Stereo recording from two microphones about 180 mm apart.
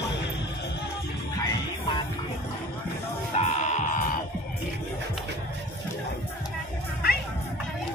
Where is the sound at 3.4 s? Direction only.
40° left (ahead or behind).